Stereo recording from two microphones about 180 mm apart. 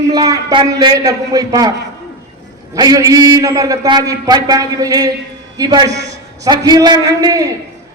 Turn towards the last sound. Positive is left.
turn(degrees=-20)  # may be behind; listen again after turning